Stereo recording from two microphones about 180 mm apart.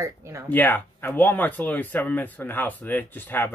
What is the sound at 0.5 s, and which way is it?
Speech, 10° left (ahead or behind).